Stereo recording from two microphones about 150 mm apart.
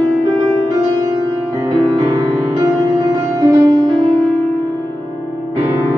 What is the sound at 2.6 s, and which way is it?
Music, 25° right (ahead or behind).